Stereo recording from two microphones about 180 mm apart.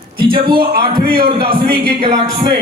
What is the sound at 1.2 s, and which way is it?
Speech, 30° right (ahead or behind).